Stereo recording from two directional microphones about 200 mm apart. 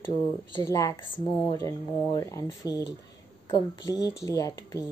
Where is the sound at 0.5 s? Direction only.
15° left (ahead or behind).